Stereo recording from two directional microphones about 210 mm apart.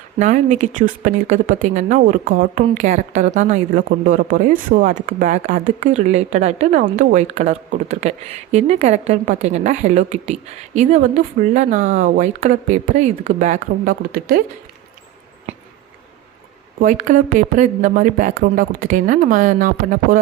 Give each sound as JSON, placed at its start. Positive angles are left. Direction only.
{"t": 0.2, "sound": "speech", "side_deg": -35}
{"t": 16.8, "sound": "speech", "side_deg": -35}